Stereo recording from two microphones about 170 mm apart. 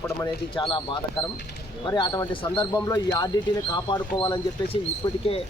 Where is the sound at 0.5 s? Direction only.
30° left (ahead or behind).